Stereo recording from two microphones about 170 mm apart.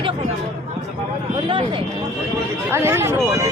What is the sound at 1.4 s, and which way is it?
Speech, 30° right (ahead or behind).